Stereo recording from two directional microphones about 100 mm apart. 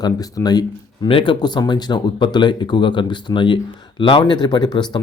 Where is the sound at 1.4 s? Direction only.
45° left (ahead or behind).